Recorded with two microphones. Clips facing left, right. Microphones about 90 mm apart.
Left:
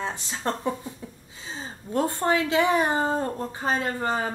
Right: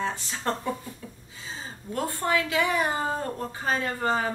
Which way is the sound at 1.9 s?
30° left (ahead or behind).